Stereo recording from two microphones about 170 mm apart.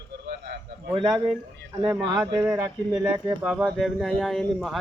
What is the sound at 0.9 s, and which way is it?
Speech, 25° right (ahead or behind).